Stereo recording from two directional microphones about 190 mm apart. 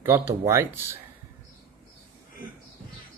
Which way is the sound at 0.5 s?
15° right (ahead or behind).